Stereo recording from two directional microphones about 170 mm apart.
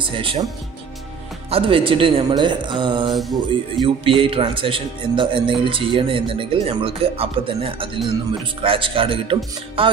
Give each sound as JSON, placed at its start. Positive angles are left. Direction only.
{"t": 0.0, "sound": "a man's voice", "side_deg": -30}
{"t": 1.5, "sound": "speech", "side_deg": -30}
{"t": 3.1, "sound": "mantra", "side_deg": 0}
{"t": 3.7, "sound": "a man's voice", "side_deg": -30}